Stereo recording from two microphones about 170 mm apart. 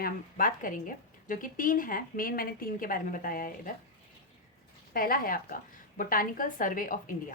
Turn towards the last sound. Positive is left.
turn(degrees=55)  # may be behind; listen again after turning